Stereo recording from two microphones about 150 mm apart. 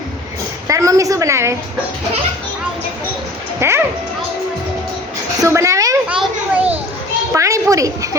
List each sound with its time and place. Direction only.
0.7 s a woman's voice: 20° right (ahead or behind)
3.6 s speech: 15° right (ahead or behind)
5.4 s a woman's voice: 20° right (ahead or behind)
6.1 s children playing: 10° right (ahead or behind)
7.3 s a woman's voice: 20° right (ahead or behind)